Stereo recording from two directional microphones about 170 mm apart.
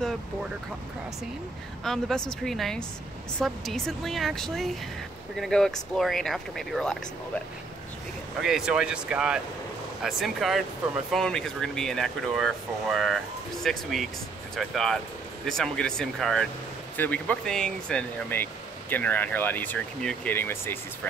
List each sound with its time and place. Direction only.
1.9 s speech: 5° left (ahead or behind)
8.4 s speech: 5° right (ahead or behind); by 21.1 s 15° left (ahead or behind)